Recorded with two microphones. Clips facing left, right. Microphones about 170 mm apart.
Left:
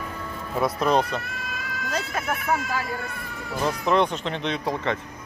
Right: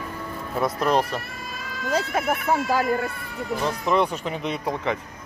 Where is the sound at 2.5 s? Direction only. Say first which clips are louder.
Right 4 dB; 30° right (ahead or behind).